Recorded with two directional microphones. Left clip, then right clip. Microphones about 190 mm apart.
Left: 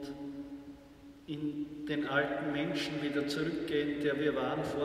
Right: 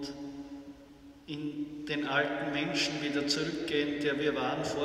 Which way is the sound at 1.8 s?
35° left (ahead or behind).